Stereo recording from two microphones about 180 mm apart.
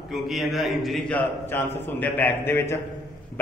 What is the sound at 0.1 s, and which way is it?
A man's voice, centre (ahead or behind).